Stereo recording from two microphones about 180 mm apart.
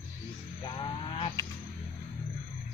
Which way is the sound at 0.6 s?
25° left (ahead or behind).